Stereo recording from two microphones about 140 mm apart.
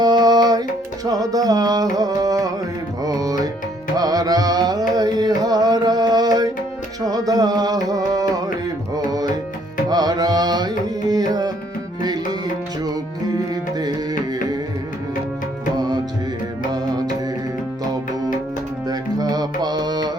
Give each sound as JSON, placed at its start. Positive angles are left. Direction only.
{"t": 0.0, "sound": "music", "side_deg": -30}
{"t": 9.0, "sound": "tabla", "side_deg": -25}
{"t": 9.9, "sound": "music", "side_deg": -30}
{"t": 13.5, "sound": "music", "side_deg": -30}
{"t": 16.7, "sound": "music", "side_deg": -30}
{"t": 18.9, "sound": "music", "side_deg": -25}